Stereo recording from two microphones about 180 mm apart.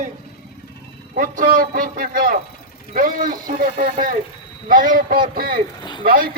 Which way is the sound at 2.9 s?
50° right (ahead or behind).